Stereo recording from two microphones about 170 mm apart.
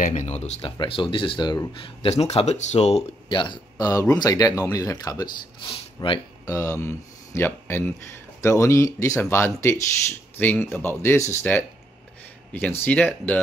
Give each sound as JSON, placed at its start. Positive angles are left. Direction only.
{"t": 0.0, "sound": "speech", "side_deg": 45}
{"t": 12.8, "sound": "speech", "side_deg": 10}